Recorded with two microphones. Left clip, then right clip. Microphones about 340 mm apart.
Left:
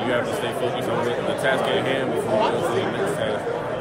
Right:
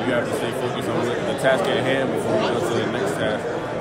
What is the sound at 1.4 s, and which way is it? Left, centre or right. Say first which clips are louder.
Speech: right 3 dB; centre.